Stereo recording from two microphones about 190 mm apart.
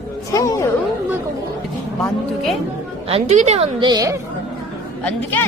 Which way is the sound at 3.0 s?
35° right (ahead or behind).